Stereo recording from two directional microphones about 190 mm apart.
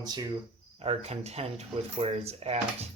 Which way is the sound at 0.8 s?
35° right (ahead or behind).